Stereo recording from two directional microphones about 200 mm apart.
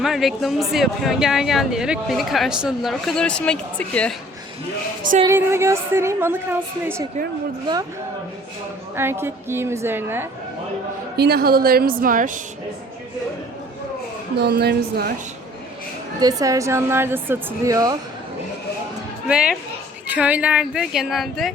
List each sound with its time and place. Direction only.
0.0 s speech: centre (ahead or behind)
5.2 s a woman's voice: 15° right (ahead or behind)
9.0 s a woman's voice: 10° right (ahead or behind)
11.2 s a woman's voice: 50° right (ahead or behind)
14.3 s a woman's voice: 55° right (ahead or behind)
16.2 s a woman's voice: 20° right (ahead or behind)
19.3 s speech: 5° right (ahead or behind)